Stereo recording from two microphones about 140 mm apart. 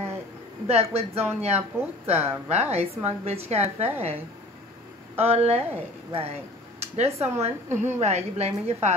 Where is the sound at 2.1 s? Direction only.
15° right (ahead or behind).